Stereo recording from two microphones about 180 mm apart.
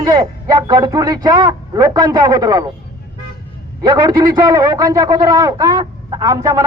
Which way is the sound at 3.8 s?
25° right (ahead or behind).